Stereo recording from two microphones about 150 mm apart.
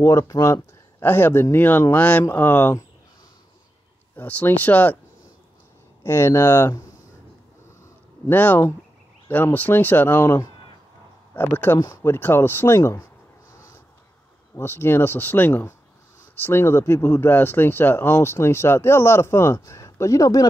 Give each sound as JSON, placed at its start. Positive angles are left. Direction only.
{"t": 0.0, "sound": "speech", "side_deg": 25}
{"t": 4.2, "sound": "speech", "side_deg": 10}
{"t": 6.0, "sound": "speech", "side_deg": 15}
{"t": 8.3, "sound": "speech", "side_deg": 15}
{"t": 14.5, "sound": "speech", "side_deg": 15}